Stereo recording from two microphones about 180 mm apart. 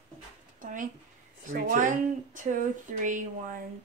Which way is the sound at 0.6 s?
45° right (ahead or behind).